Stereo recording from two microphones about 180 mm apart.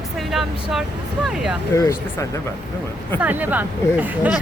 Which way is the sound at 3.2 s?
10° right (ahead or behind).